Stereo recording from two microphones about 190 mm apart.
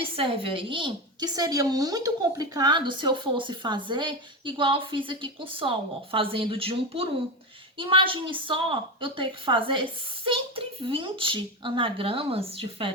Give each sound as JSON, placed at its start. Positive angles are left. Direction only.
{"t": 0.2, "sound": "a woman's voice", "side_deg": -30}